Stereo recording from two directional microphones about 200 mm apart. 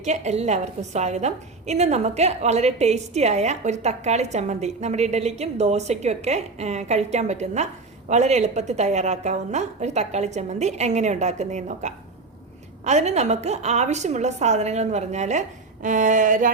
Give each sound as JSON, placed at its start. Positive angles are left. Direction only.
{"t": 0.0, "sound": "a woman's voice", "side_deg": -35}